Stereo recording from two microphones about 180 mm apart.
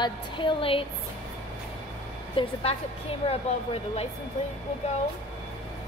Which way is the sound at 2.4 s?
30° left (ahead or behind).